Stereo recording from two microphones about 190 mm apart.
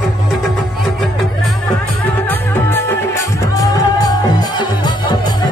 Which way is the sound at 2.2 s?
10° left (ahead or behind).